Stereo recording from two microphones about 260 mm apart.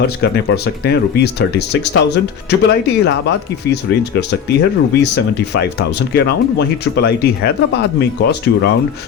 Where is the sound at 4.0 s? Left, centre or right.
Left.